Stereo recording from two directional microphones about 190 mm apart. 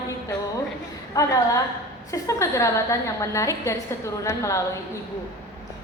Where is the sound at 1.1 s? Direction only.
20° left (ahead or behind).